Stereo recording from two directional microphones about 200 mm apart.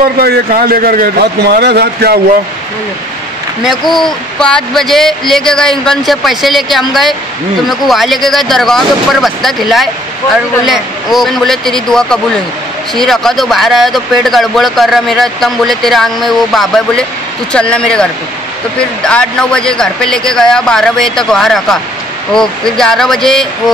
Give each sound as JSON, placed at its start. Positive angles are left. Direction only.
{"t": 0.2, "sound": "a man's voice", "side_deg": -50}
{"t": 3.6, "sound": "speech", "side_deg": 0}